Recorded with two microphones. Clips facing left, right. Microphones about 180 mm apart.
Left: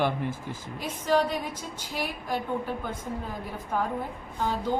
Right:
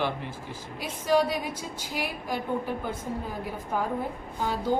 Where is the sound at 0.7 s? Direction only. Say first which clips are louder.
Right 1 dB; 10° right (ahead or behind).